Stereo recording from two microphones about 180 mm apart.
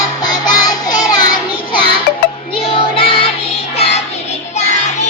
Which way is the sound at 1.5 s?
30° left (ahead or behind).